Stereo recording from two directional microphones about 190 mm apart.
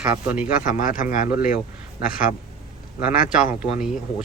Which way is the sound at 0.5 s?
45° left (ahead or behind).